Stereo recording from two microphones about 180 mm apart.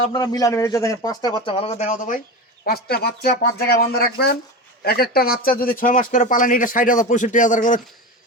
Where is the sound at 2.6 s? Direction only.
60° left (ahead or behind).